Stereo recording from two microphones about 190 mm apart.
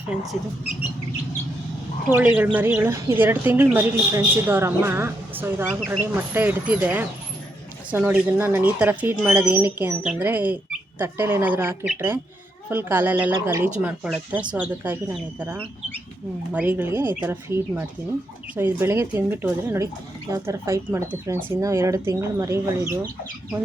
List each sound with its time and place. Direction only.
2.0 s a woman's voice: 10° right (ahead or behind)